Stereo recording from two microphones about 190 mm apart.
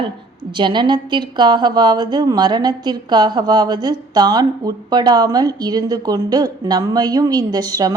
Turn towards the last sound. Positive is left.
turn(degrees=-20)  # may be behind; listen again after turning